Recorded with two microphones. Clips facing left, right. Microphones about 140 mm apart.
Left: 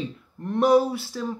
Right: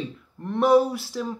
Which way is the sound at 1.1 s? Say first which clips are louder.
Right 2 dB; 5° right (ahead or behind).